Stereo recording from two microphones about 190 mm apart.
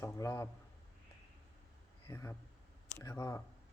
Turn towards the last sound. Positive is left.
turn(degrees=15)  # may be behind; listen again after turning